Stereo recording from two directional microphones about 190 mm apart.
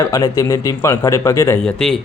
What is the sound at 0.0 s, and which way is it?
A man's voice, 20° left (ahead or behind).